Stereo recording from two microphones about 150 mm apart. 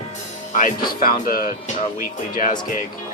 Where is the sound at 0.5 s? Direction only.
70° left (ahead or behind).